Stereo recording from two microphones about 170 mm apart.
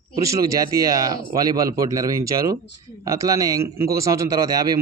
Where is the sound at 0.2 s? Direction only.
20° right (ahead or behind).